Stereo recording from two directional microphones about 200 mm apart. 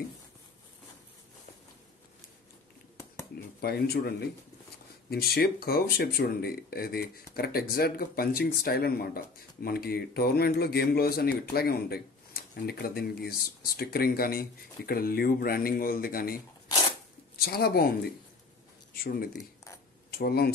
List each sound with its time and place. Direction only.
3.3 s speech: 50° left (ahead or behind)
5.1 s speech: 50° left (ahead or behind)
17.4 s speech: 50° left (ahead or behind)
20.1 s speech: 50° left (ahead or behind)